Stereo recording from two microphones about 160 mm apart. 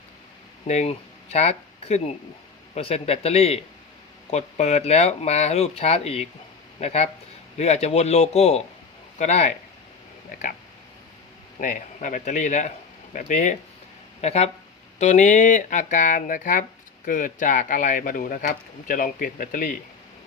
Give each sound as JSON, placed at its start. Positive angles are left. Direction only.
{"t": 0.7, "sound": "speech", "side_deg": 45}
{"t": 10.3, "sound": "speech", "side_deg": 60}
{"t": 11.6, "sound": "speech", "side_deg": 50}